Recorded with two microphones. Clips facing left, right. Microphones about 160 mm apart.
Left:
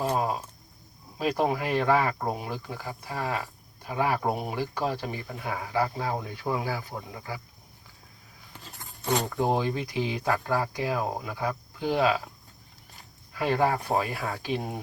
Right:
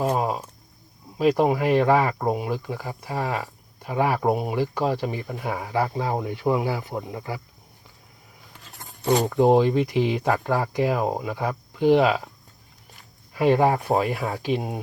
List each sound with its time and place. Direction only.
0.0 s a sound: 20° right (ahead or behind)
1.2 s speech: 20° right (ahead or behind)
9.2 s speech: 20° right (ahead or behind)
13.4 s speech: 20° right (ahead or behind)